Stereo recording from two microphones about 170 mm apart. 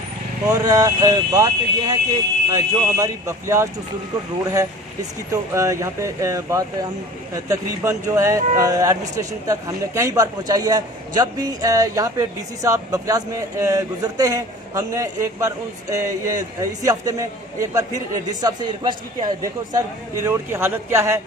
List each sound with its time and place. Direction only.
0.4 s speech: 20° right (ahead or behind)
5.3 s speech: 20° right (ahead or behind)